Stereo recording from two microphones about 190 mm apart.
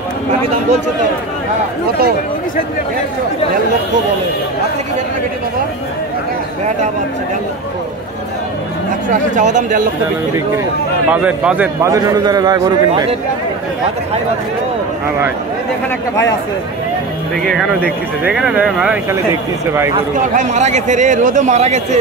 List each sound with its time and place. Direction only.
9.3 s a man's voice: 40° right (ahead or behind)
11.1 s a man's voice: 10° right (ahead or behind); by 13.1 s 25° right (ahead or behind)
17.4 s speech: 5° left (ahead or behind)
18.2 s speech: 5° right (ahead or behind)
20.3 s a man's voice: 40° right (ahead or behind)